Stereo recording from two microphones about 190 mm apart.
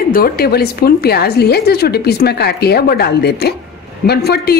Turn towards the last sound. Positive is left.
turn(degrees=55)  # may be behind; listen again after turning